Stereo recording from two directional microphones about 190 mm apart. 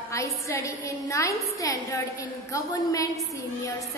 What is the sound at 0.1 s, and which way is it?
A woman's voice, 15° left (ahead or behind).